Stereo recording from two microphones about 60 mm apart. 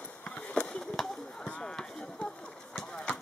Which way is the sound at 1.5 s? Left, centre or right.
Centre.